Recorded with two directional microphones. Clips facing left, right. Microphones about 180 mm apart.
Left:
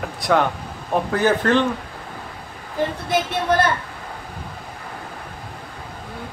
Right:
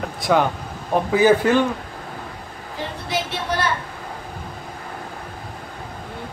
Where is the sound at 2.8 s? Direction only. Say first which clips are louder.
Left 5 dB; 50° left (ahead or behind).